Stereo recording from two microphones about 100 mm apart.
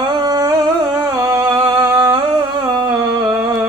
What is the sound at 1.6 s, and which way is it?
Humming, 25° right (ahead or behind).